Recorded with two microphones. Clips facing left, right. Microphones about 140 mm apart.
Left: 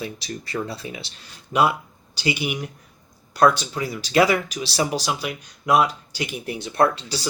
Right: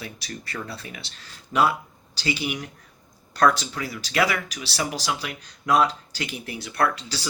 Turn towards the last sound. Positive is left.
turn(degrees=20)  # may be behind; listen again after turning